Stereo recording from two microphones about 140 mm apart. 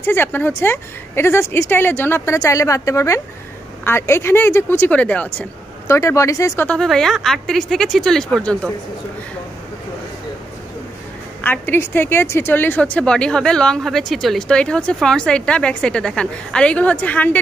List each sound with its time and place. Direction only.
0.0 s a woman's voice: 15° left (ahead or behind)
5.9 s speech: 20° left (ahead or behind)
6.7 s speech: 5° left (ahead or behind)
11.4 s a woman's voice: 15° left (ahead or behind)